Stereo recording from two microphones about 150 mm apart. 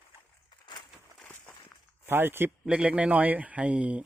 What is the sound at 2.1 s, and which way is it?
Speech, 15° right (ahead or behind).